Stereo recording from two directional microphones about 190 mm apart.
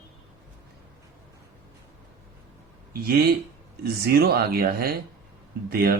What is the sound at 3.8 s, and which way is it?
Speech, 55° right (ahead or behind).